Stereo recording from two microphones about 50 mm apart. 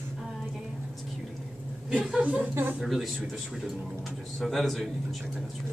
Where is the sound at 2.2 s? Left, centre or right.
Right.